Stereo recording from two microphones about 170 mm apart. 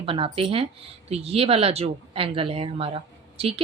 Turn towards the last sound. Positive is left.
turn(degrees=-35)  # may be behind; listen again after turning